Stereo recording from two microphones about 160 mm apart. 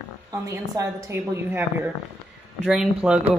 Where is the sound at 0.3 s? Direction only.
20° right (ahead or behind).